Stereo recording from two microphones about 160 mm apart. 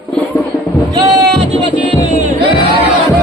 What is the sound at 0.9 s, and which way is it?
Music, 25° right (ahead or behind).